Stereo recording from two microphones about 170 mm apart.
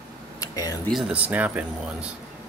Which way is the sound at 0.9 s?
5° right (ahead or behind).